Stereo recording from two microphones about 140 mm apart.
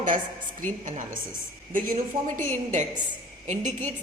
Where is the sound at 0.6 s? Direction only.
70° right (ahead or behind).